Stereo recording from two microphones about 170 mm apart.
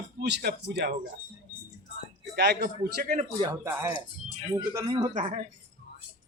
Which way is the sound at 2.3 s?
70° right (ahead or behind).